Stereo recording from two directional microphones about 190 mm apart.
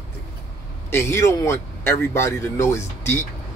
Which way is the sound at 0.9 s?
15° left (ahead or behind).